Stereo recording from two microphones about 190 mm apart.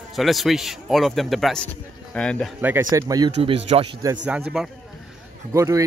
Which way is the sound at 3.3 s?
30° right (ahead or behind).